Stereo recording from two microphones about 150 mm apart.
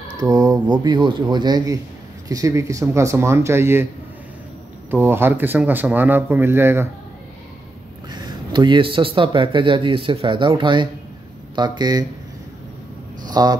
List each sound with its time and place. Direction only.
0.2 s speech: 25° right (ahead or behind)
4.9 s speech: 15° right (ahead or behind)
8.1 s speech: 30° right (ahead or behind)
13.3 s speech: 25° right (ahead or behind)